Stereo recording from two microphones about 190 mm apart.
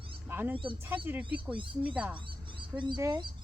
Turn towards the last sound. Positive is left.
turn(degrees=-20)  # may be behind; listen again after turning